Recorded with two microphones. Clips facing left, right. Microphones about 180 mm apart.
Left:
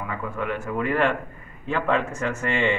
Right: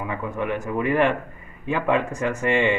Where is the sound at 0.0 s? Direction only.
15° right (ahead or behind).